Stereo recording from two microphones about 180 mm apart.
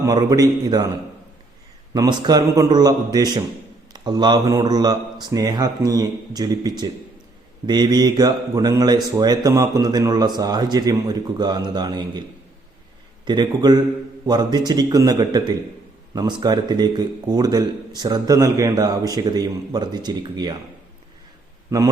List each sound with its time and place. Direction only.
0.0 s speech: 20° right (ahead or behind)
1.9 s speech: 20° right (ahead or behind)
13.2 s speech: 25° right (ahead or behind)